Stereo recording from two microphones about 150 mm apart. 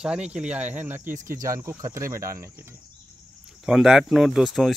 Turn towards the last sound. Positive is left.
turn(degrees=0)  # may be behind; listen again after turning